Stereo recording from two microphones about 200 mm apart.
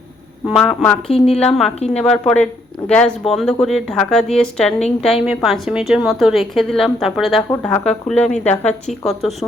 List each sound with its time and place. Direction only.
0.4 s a woman's voice: centre (ahead or behind)